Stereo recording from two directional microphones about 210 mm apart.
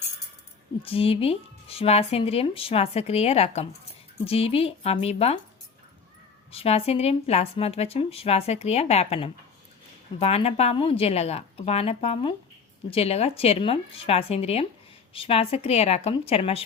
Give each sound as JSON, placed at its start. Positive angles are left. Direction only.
{"t": 0.8, "sound": "speech", "side_deg": 25}
{"t": 6.5, "sound": "speech", "side_deg": 30}